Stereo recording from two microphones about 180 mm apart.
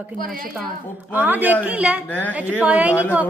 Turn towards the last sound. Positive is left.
turn(degrees=-10)  # may be behind; listen again after turning